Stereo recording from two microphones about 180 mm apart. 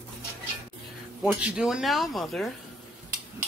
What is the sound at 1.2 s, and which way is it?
Speech, 5° right (ahead or behind).